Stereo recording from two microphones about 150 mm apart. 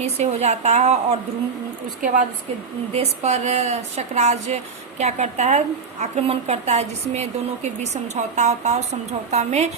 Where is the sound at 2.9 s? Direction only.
45° right (ahead or behind).